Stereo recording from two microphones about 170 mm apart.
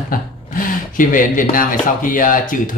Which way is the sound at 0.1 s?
55° left (ahead or behind).